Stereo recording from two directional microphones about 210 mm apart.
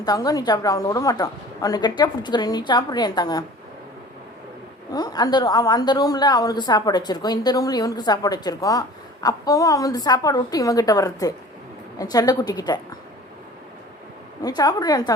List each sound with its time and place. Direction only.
0.0 s a woman's voice: 20° left (ahead or behind)
4.9 s a woman's voice: 20° left (ahead or behind)
14.4 s a woman's voice: 20° left (ahead or behind)